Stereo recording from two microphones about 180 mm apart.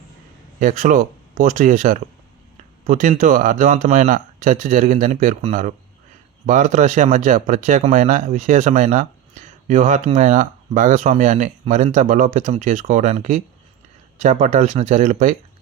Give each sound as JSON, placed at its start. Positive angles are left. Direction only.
{"t": 0.6, "sound": "speech", "side_deg": -45}